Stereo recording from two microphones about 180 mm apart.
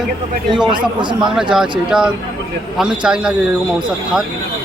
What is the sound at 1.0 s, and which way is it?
Speech, 25° right (ahead or behind).